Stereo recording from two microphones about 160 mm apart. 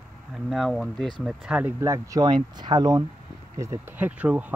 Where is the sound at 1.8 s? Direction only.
20° right (ahead or behind).